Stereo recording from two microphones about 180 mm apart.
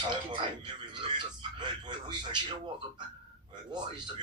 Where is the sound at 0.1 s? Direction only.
25° right (ahead or behind).